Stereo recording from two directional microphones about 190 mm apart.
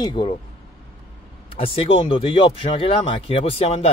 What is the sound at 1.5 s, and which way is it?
Speech, 30° left (ahead or behind).